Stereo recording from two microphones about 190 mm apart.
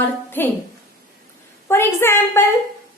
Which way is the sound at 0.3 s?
10° left (ahead or behind).